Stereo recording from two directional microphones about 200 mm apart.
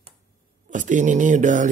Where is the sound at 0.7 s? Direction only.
40° right (ahead or behind).